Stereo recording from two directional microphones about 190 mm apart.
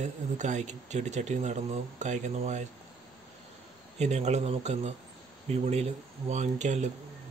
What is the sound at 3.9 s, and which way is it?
Speech, 35° right (ahead or behind).